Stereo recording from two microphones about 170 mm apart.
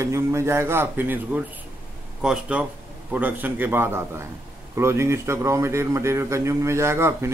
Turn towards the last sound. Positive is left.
turn(degrees=-15)  # may be behind; listen again after turning